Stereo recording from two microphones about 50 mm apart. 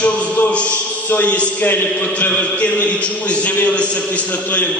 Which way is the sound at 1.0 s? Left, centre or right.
Left.